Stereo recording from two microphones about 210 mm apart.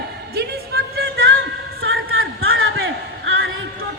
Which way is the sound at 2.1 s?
75° right (ahead or behind).